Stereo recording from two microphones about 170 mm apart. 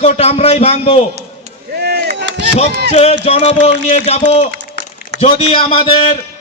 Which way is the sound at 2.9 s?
35° left (ahead or behind).